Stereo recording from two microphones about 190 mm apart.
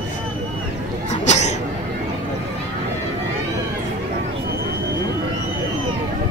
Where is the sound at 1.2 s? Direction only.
35° left (ahead or behind).